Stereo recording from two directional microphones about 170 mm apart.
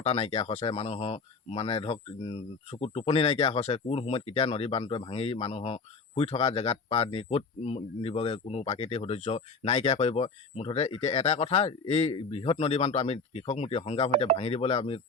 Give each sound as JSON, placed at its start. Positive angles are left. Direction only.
{"t": 0.0, "sound": "speech", "side_deg": 40}